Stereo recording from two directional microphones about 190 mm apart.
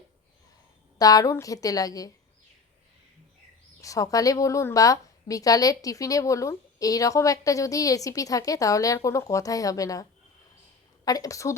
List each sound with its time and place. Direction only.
0.9 s a woman's voice: 20° left (ahead or behind)
3.8 s a woman's voice: 15° left (ahead or behind)